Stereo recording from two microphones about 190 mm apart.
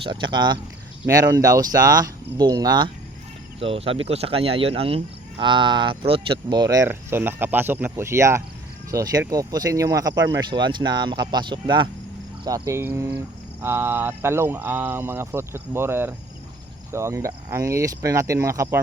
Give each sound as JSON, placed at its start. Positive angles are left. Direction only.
{"t": 0.0, "sound": "speech", "side_deg": -25}